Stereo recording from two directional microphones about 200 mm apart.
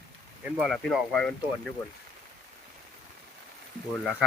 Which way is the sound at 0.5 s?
Centre (ahead or behind).